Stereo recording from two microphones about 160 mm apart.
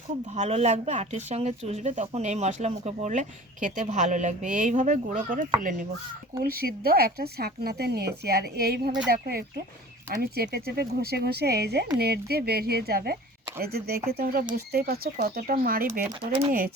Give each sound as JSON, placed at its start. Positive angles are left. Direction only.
{"t": 0.3, "sound": "speech", "side_deg": -45}
{"t": 6.4, "sound": "speech", "side_deg": -75}
{"t": 11.9, "sound": "speech", "side_deg": -80}